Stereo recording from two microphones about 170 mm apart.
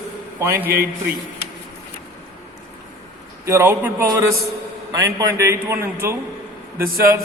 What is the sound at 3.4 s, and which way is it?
A man's voice, 15° right (ahead or behind).